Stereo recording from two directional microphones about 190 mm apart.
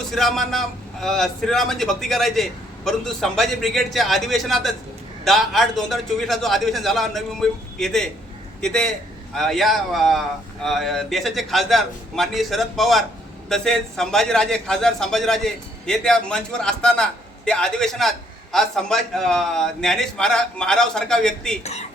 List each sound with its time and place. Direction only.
0.1 s a man's voice: centre (ahead or behind)
21.6 s speech: 35° left (ahead or behind)